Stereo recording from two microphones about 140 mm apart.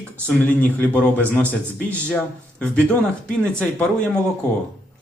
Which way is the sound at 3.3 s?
10° left (ahead or behind).